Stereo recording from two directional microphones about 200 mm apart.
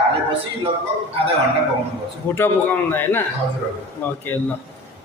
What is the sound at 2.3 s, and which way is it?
Speech, 10° left (ahead or behind).